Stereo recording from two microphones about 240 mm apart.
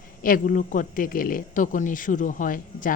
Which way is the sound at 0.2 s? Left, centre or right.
Left.